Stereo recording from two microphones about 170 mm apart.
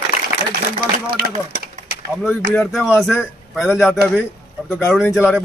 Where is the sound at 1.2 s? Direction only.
60° right (ahead or behind).